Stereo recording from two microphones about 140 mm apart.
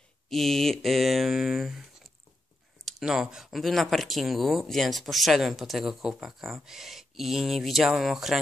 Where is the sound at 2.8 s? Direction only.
5° right (ahead or behind).